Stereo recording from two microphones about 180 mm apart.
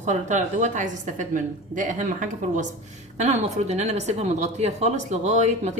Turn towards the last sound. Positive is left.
turn(degrees=-40)  # may be behind; listen again after turning